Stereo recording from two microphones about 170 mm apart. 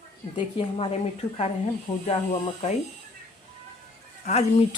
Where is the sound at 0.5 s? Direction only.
35° left (ahead or behind).